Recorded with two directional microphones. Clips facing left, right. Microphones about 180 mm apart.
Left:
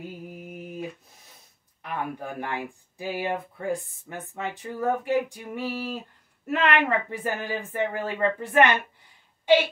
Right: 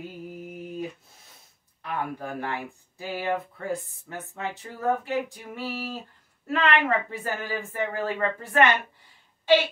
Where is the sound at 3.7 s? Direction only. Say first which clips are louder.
Even; 15° left (ahead or behind).